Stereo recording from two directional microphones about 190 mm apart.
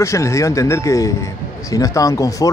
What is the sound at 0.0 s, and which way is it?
A man's voice, 15° left (ahead or behind).